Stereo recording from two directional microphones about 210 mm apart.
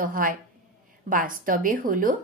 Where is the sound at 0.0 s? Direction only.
40° right (ahead or behind).